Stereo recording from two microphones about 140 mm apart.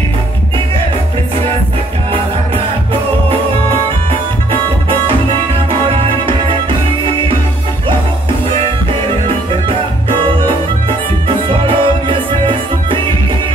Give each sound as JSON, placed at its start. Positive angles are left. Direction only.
{"t": 2.5, "sound": "music", "side_deg": -40}
{"t": 11.2, "sound": "music", "side_deg": -40}